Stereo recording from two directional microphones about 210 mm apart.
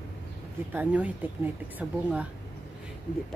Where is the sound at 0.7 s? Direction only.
10° right (ahead or behind).